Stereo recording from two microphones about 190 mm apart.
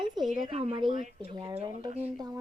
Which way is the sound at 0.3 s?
25° right (ahead or behind).